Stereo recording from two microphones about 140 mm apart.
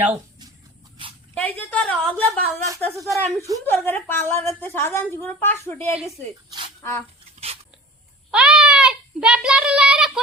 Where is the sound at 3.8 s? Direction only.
15° left (ahead or behind).